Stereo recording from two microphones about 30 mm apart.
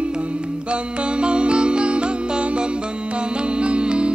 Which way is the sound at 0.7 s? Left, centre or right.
Right.